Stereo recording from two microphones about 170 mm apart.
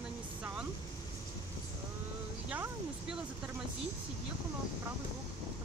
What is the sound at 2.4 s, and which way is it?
Speech, 5° right (ahead or behind).